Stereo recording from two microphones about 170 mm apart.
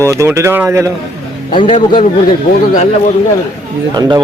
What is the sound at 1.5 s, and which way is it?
Speech, 30° left (ahead or behind).